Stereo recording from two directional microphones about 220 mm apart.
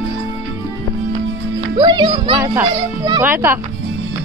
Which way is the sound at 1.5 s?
20° right (ahead or behind).